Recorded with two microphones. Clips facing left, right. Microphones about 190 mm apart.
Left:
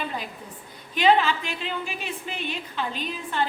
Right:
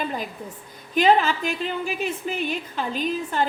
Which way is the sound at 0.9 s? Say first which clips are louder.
Right 2 dB; 45° right (ahead or behind).